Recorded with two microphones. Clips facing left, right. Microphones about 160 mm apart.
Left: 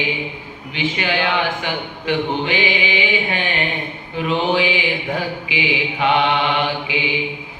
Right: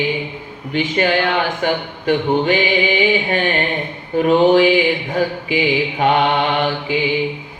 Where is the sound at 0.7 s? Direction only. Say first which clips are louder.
Right 5 dB; 45° right (ahead or behind).